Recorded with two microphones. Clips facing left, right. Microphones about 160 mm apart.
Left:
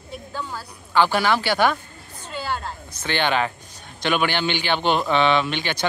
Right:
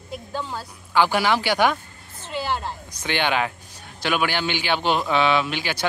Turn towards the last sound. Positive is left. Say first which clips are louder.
# left 1 dB
turn(degrees=-5)  # may be behind; listen again after turning